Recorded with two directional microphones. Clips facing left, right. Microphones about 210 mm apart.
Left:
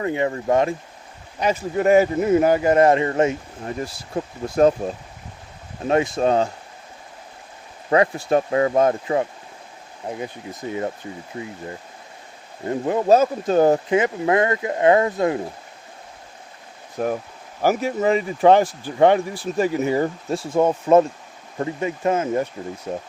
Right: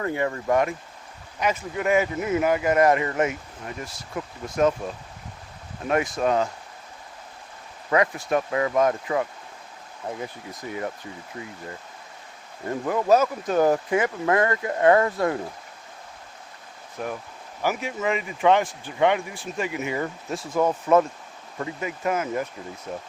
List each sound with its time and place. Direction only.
0.0 s speech: 20° left (ahead or behind)
7.9 s speech: 30° left (ahead or behind)
12.6 s speech: 25° left (ahead or behind)
17.0 s speech: 40° left (ahead or behind)